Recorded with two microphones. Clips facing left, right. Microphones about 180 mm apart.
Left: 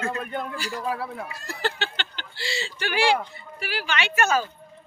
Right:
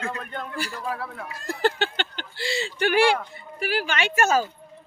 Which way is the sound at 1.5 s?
50° right (ahead or behind).